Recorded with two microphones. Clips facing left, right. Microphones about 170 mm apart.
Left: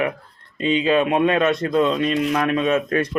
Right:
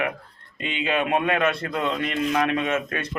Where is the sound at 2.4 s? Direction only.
25° right (ahead or behind).